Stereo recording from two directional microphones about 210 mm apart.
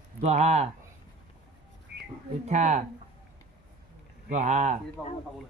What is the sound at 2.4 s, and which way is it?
Speech, 35° right (ahead or behind).